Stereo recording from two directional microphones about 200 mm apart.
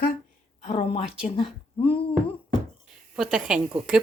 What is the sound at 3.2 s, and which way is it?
Speech, 5° right (ahead or behind).